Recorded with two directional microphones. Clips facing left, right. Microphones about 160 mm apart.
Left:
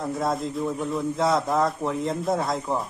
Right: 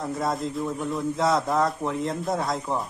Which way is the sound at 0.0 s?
Centre (ahead or behind).